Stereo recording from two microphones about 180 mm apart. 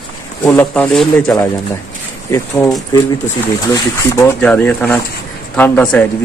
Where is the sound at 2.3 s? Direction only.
15° left (ahead or behind).